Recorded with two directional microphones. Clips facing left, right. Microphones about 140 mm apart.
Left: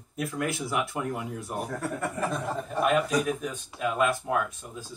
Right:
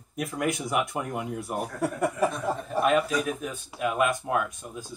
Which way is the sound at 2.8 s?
Centre (ahead or behind).